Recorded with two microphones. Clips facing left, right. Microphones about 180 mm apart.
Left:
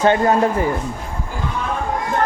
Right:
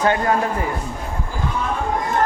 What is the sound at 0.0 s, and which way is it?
Speech, 25° left (ahead or behind).